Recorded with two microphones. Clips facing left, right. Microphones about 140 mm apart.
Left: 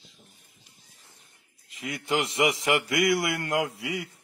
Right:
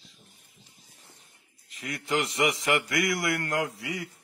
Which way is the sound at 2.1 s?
25° left (ahead or behind).